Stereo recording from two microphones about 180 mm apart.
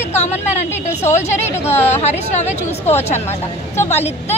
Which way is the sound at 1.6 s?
35° left (ahead or behind).